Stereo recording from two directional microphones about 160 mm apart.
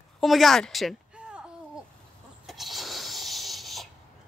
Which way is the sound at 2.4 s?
Centre (ahead or behind).